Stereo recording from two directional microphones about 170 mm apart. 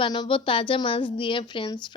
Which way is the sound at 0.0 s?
30° left (ahead or behind).